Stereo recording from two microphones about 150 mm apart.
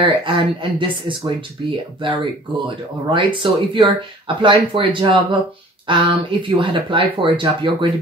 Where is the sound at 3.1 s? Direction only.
35° right (ahead or behind).